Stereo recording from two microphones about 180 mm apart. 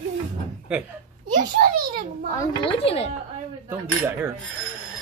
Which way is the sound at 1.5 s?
50° right (ahead or behind).